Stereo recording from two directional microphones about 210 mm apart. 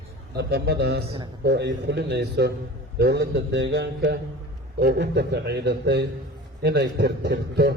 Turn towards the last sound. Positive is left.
turn(degrees=-50)  # may be behind; listen again after turning